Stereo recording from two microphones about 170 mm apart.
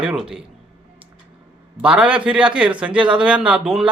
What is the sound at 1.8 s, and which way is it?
A man's voice, 5° right (ahead or behind).